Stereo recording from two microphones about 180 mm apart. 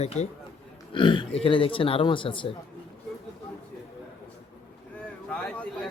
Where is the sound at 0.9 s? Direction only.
25° left (ahead or behind).